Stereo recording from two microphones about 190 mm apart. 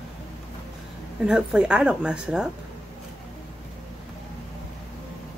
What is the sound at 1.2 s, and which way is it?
Speech, 5° right (ahead or behind).